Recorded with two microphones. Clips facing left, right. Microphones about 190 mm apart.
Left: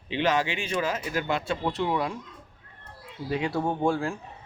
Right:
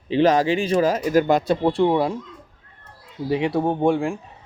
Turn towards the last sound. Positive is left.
turn(degrees=-15)  # may be behind; listen again after turning